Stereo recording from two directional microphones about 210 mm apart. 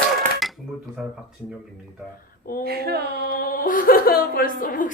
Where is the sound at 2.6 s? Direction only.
50° right (ahead or behind).